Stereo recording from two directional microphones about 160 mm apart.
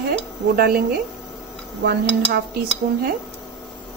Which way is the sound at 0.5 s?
75° right (ahead or behind).